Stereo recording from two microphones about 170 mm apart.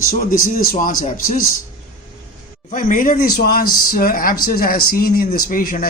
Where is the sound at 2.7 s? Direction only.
50° left (ahead or behind).